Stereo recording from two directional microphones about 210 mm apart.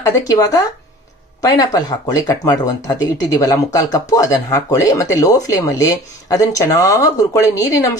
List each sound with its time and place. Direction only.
0.0 s speech: 15° left (ahead or behind)